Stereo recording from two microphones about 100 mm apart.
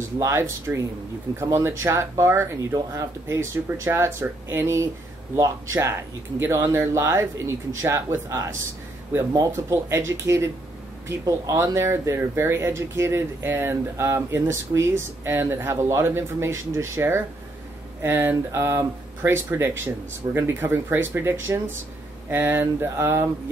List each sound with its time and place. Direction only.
0.2 s speech: 25° right (ahead or behind)